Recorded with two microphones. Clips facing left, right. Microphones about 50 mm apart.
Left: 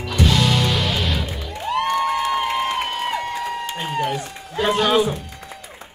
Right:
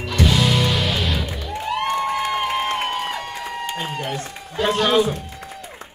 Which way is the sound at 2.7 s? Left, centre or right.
Right.